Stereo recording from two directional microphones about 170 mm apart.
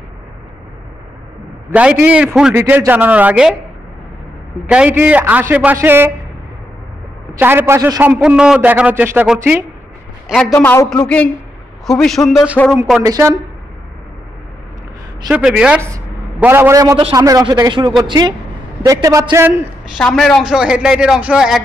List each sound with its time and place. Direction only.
1.7 s a man's voice: 5° right (ahead or behind)
4.6 s a man's voice: 5° right (ahead or behind)
7.3 s a man's voice: 10° right (ahead or behind)
10.2 s a man's voice: centre (ahead or behind)
10.5 s a man's voice: 15° left (ahead or behind)
13.0 s speech: 20° right (ahead or behind)
15.2 s a man's voice: 5° right (ahead or behind)
20.0 s speech: 5° left (ahead or behind)